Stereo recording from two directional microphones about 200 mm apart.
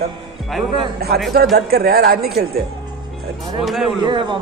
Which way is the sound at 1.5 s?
50° right (ahead or behind).